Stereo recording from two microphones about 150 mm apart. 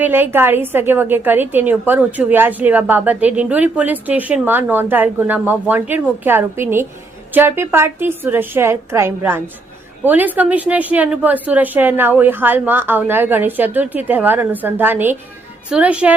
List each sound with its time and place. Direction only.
0.0 s a woman's voice: 15° right (ahead or behind)